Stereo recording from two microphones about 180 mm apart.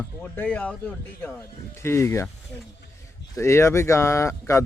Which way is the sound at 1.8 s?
15° left (ahead or behind).